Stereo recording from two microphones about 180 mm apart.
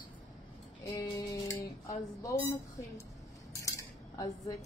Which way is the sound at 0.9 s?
20° left (ahead or behind).